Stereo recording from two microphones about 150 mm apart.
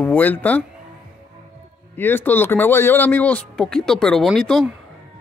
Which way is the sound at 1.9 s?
15° left (ahead or behind).